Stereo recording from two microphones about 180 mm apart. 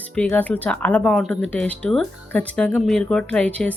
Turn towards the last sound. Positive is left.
turn(degrees=5)  # may be behind; listen again after turning